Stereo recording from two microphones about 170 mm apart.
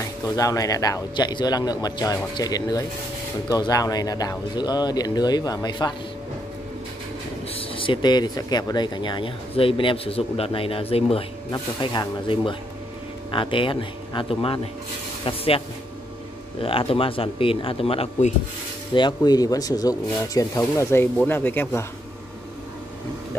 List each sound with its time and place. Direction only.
0.4 s speech: 20° left (ahead or behind)
7.5 s speech: 30° left (ahead or behind)
11.5 s speech: 25° left (ahead or behind)
16.6 s speech: 35° left (ahead or behind)
18.9 s speech: 25° left (ahead or behind)